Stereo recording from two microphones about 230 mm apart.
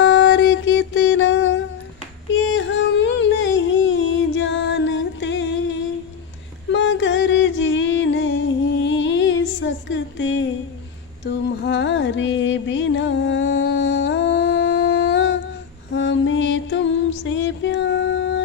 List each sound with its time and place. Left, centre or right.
0.0 s music: left
2.3 s a sound: left
11.2 s music: left